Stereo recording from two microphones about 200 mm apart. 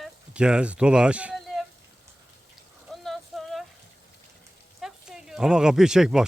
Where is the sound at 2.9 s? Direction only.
Centre (ahead or behind).